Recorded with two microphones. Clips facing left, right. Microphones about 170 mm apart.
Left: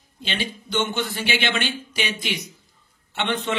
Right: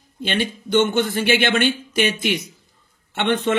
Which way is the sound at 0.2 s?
50° right (ahead or behind).